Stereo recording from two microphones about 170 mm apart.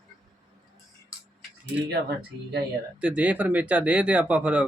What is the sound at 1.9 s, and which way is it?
Speech, 75° right (ahead or behind).